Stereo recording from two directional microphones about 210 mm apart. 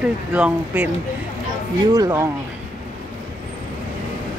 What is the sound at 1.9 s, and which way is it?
Speech, 15° right (ahead or behind).